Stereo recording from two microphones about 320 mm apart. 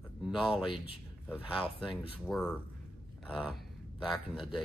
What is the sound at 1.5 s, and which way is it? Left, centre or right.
Speech, centre.